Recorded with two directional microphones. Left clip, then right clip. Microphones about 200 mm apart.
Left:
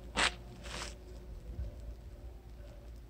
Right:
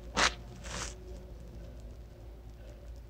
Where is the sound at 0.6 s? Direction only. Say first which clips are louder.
Right 3 dB; 10° left (ahead or behind).